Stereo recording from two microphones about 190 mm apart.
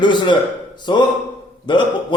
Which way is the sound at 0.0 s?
25° left (ahead or behind).